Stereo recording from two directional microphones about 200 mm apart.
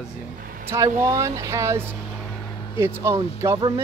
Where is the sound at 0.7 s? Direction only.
15° right (ahead or behind).